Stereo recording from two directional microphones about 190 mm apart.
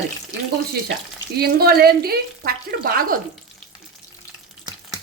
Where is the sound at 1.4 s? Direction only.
55° right (ahead or behind).